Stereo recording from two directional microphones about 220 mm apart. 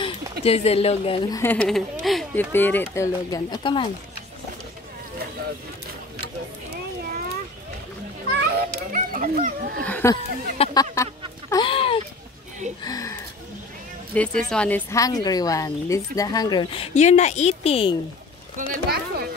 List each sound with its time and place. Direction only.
0.0 s speech: 25° left (ahead or behind)
8.3 s children playing: 45° right (ahead or behind)
9.8 s speech: 10° left (ahead or behind)
11.5 s a sound: 25° left (ahead or behind)
12.8 s a woman's voice: 15° left (ahead or behind)
18.7 s speech: 45° right (ahead or behind)